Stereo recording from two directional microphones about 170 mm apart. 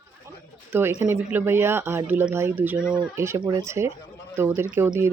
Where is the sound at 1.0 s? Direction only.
15° right (ahead or behind).